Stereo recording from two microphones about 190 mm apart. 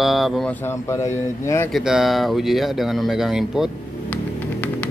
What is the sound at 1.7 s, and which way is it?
Speech, centre (ahead or behind).